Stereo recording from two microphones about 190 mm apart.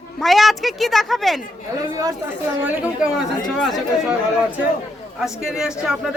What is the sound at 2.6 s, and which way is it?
A woman's voice, 5° right (ahead or behind).